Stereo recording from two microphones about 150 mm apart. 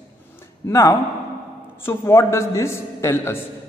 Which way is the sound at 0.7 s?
20° left (ahead or behind).